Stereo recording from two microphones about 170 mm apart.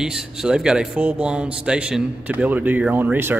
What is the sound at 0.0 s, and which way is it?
Speech, 5° right (ahead or behind).